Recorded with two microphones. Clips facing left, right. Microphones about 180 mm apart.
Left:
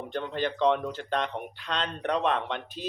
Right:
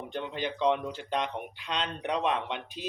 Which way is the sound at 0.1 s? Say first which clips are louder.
Left 4 dB; 15° right (ahead or behind).